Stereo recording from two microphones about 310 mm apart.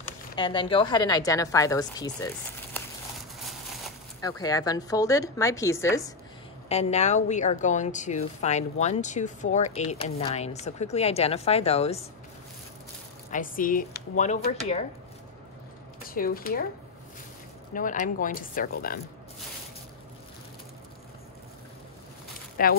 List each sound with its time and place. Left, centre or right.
0.0 s a woman's voice: centre
4.2 s a woman's voice: centre
6.7 s a woman's voice: left
13.3 s a woman's voice: left
16.0 s speech: left
17.7 s a woman's voice: left
22.6 s a woman's voice: left